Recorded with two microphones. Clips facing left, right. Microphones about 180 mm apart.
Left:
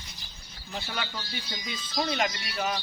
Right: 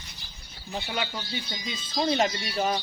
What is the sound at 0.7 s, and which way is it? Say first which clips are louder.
Speech: right 4 dB; 20° right (ahead or behind).